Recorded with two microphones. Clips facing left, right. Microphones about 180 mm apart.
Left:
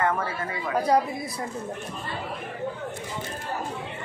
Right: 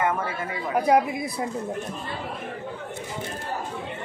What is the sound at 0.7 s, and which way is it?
Speech, 15° right (ahead or behind).